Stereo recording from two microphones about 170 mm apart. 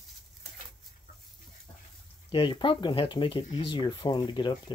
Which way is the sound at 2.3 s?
30° left (ahead or behind).